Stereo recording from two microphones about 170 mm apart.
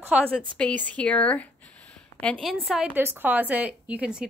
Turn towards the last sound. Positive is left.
turn(degrees=-5)  # may be behind; listen again after turning